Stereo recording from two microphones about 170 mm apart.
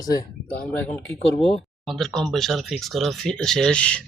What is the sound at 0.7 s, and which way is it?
Speech, 10° left (ahead or behind).